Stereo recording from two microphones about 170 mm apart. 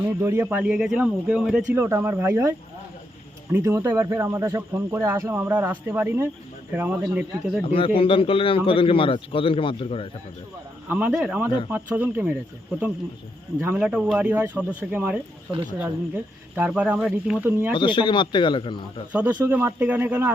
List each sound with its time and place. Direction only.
0.0 s speech: 15° right (ahead or behind)
7.6 s a man's voice: 30° left (ahead or behind)
10.8 s speech: 10° right (ahead or behind)
13.6 s speech: 10° right (ahead or behind)
17.7 s a man's voice: 30° left (ahead or behind)
19.1 s speech: 10° right (ahead or behind)